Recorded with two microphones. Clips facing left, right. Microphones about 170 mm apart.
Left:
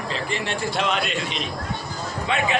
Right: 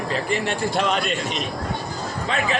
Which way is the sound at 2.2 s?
40° right (ahead or behind).